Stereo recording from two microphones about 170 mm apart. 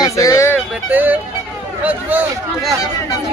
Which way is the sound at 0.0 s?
20° left (ahead or behind).